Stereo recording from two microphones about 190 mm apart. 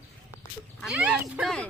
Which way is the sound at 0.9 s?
5° right (ahead or behind).